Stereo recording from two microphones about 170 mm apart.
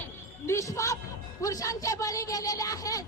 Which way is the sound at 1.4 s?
20° left (ahead or behind).